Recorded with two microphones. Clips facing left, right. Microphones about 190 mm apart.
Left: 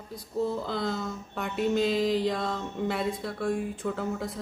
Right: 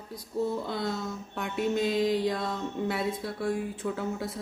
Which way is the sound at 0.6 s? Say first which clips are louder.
Left 1 dB; centre (ahead or behind).